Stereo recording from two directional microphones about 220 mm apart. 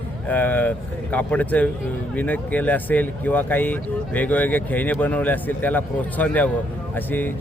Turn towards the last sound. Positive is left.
turn(degrees=10)  # may be behind; listen again after turning